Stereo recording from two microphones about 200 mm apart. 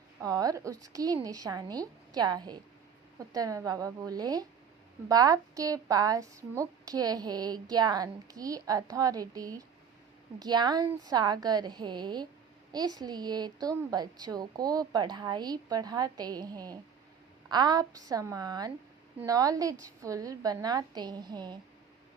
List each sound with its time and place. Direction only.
0.2 s a woman's voice: 20° right (ahead or behind)